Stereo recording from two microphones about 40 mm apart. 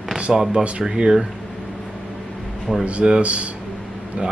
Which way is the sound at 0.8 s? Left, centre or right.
Centre.